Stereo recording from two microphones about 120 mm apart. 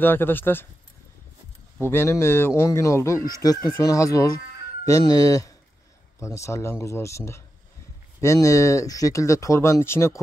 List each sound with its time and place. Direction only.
0.0 s speech: 15° left (ahead or behind)
1.8 s speech: 20° left (ahead or behind)